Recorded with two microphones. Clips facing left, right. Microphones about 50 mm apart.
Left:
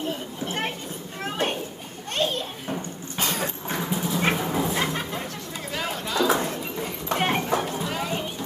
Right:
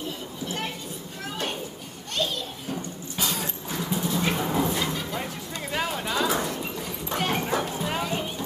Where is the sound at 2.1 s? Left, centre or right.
Left.